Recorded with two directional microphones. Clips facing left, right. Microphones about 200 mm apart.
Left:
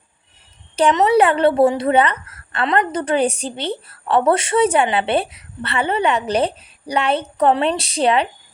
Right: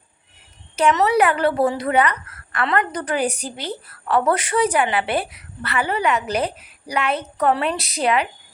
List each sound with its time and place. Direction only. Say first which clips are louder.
0.8 s a woman's voice: left 3 dB; 25° left (ahead or behind)